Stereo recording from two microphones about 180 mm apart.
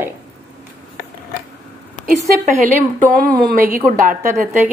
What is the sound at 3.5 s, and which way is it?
Speech, 50° right (ahead or behind).